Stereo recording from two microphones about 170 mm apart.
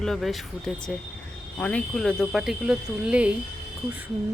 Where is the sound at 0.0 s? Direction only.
Centre (ahead or behind).